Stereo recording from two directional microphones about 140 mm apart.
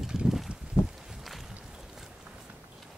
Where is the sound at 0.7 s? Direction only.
15° left (ahead or behind).